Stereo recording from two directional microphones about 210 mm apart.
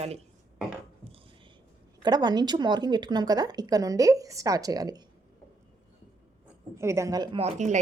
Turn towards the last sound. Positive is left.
turn(degrees=-35)  # may be behind; listen again after turning